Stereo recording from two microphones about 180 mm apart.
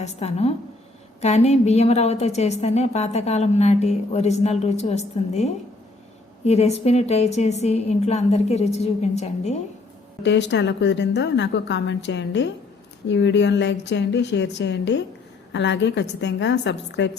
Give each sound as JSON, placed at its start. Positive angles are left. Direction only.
{"t": 0.0, "sound": "a woman's voice", "side_deg": 35}
{"t": 10.2, "sound": "a woman's voice", "side_deg": 75}